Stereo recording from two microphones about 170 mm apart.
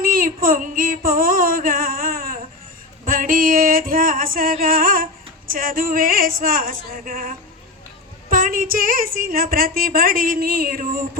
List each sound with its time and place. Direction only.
0.0 s child singing: 55° right (ahead or behind)
3.0 s music: 55° right (ahead or behind)
5.5 s a woman's voice: 55° right (ahead or behind)